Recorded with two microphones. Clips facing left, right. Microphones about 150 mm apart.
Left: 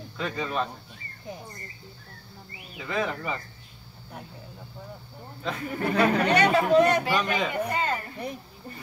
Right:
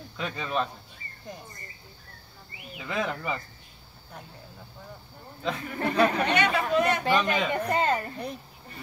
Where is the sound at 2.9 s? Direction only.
5° right (ahead or behind).